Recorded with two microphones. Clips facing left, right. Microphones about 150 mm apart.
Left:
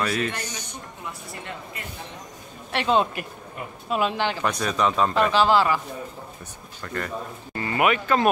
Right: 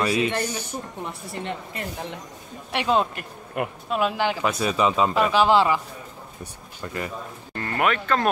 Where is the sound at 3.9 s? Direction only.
5° right (ahead or behind).